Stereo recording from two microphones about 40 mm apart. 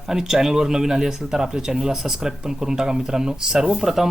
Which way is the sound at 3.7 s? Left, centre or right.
Centre.